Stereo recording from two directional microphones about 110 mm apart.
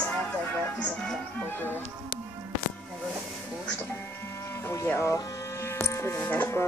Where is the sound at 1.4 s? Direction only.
20° left (ahead or behind).